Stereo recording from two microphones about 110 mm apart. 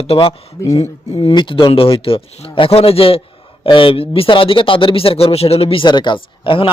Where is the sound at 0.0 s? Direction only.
65° left (ahead or behind).